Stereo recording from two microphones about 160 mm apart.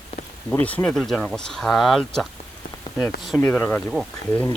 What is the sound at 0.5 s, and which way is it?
Speech, 10° left (ahead or behind).